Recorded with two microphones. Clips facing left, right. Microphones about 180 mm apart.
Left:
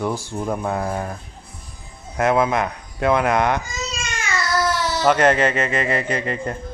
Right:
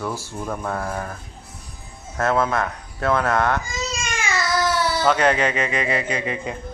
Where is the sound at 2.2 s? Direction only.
15° left (ahead or behind).